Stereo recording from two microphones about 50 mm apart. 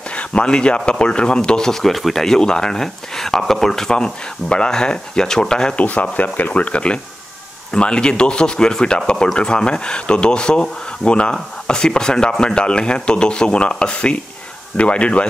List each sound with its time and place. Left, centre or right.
0.1 s speech: left
5.8 s speech: left